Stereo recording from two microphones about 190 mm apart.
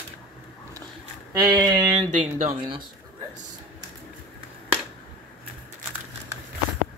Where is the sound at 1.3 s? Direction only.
20° right (ahead or behind).